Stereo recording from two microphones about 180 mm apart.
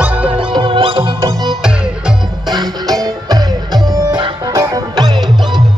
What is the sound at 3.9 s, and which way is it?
Music, 20° right (ahead or behind).